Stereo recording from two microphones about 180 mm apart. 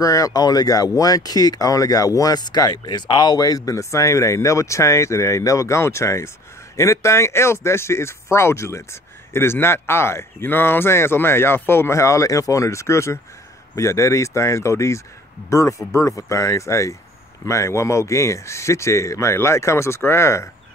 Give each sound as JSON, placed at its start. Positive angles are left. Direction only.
{"t": 0.0, "sound": "speech", "side_deg": 20}